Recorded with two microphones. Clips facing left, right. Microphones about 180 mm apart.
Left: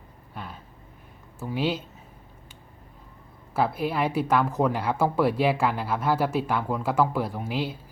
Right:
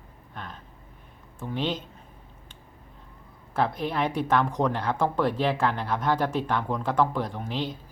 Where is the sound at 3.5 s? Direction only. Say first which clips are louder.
Left 1 dB; 5° left (ahead or behind).